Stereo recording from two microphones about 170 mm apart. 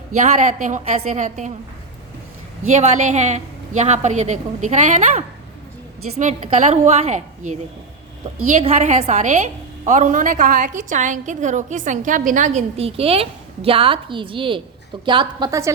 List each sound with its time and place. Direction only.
0.2 s a woman's voice: 45° right (ahead or behind)
2.7 s a woman's voice: 45° right (ahead or behind)
8.5 s a woman's voice: 45° right (ahead or behind); by 15.7 s 20° right (ahead or behind)